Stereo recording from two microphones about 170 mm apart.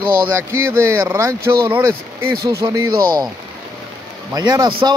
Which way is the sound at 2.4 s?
20° right (ahead or behind).